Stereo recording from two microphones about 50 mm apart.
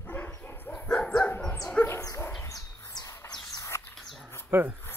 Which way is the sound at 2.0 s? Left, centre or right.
Left.